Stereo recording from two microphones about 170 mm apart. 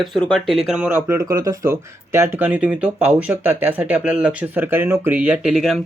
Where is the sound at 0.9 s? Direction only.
15° right (ahead or behind).